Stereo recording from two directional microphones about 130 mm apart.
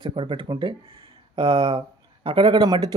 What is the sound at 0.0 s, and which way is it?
A man's voice, 40° right (ahead or behind).